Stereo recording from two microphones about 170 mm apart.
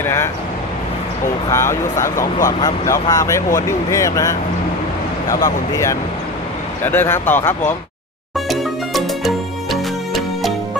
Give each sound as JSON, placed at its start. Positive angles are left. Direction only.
{"t": 0.0, "sound": "speech", "side_deg": 15}
{"t": 1.5, "sound": "speech", "side_deg": 15}
{"t": 8.4, "sound": "music", "side_deg": 0}